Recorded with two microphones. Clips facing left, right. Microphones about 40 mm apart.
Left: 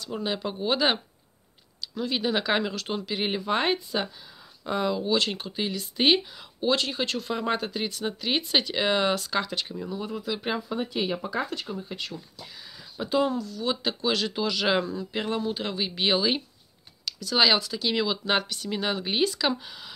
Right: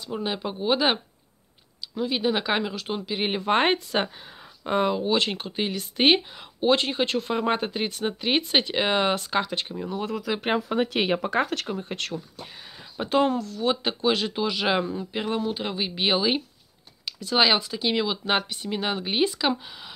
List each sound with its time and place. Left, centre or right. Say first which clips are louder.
0.2 s speech: even; centre
3.3 s speech: right 5 dB; right
4.6 s speech: right 3 dB; right
9.8 s speech: right 5 dB; right
10.6 s speech: right 4 dB; right
12.4 s a sound: right 2 dB; right
13.1 s speech: right 3 dB; right
13.6 s speech: right 3 dB; right